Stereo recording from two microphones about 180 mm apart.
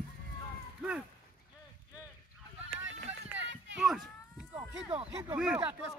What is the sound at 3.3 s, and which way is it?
Run, 90° right.